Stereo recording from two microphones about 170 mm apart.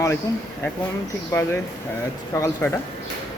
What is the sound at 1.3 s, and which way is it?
Speech, 15° left (ahead or behind).